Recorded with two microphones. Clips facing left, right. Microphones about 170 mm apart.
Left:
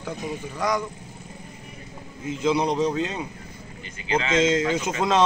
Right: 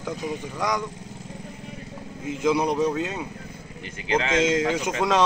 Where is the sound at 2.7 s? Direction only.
20° left (ahead or behind).